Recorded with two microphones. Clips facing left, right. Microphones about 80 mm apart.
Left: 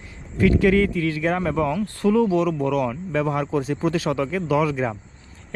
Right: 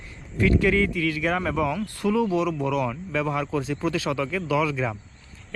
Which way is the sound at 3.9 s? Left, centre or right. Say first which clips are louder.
Left 2 dB; left.